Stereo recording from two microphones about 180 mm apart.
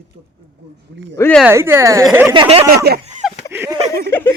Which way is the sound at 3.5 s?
15° right (ahead or behind).